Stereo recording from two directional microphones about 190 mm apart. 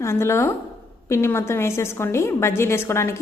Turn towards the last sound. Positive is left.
turn(degrees=15)  # may be behind; listen again after turning